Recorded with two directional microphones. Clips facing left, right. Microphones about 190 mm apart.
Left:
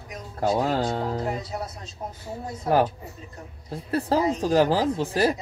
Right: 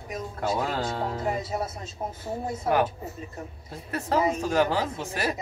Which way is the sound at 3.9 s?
35° left (ahead or behind).